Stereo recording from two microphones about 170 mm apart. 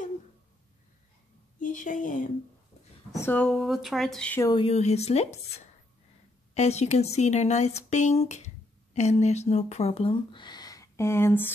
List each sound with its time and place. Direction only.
1.6 s a woman's voice: 50° left (ahead or behind)
3.1 s speech: 15° left (ahead or behind)
4.5 s speech: 35° left (ahead or behind)
6.5 s speech: 40° left (ahead or behind); by 11.5 s 15° left (ahead or behind)